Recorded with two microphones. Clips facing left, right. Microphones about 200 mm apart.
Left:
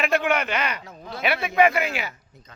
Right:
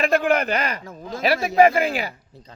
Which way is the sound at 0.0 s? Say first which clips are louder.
Right 3 dB; 35° right (ahead or behind).